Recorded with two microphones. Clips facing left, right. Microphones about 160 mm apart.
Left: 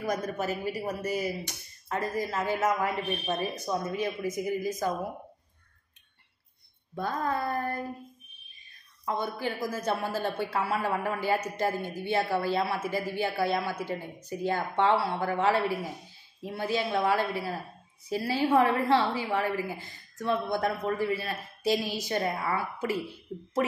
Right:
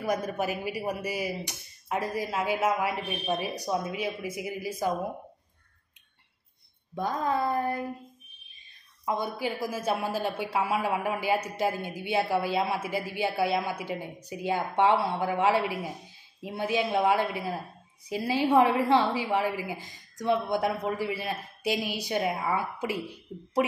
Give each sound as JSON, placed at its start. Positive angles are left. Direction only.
{"t": 0.0, "sound": "a man's voice", "side_deg": -10}
{"t": 7.0, "sound": "a man's voice", "side_deg": -15}
{"t": 9.0, "sound": "a man's voice", "side_deg": -15}